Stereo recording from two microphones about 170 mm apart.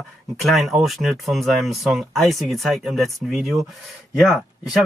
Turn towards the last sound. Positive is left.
turn(degrees=0)  # may be behind; listen again after turning